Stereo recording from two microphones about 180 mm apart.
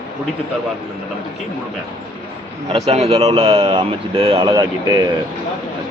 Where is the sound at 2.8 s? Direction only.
35° right (ahead or behind).